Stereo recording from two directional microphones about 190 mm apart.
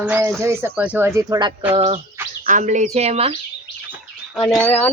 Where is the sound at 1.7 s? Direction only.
35° right (ahead or behind).